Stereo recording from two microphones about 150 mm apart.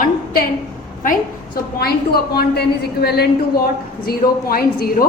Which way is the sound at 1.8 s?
90° left.